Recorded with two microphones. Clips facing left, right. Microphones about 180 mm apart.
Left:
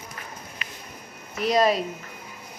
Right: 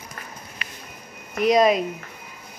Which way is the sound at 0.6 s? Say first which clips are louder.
Right 1 dB; 70° right (ahead or behind).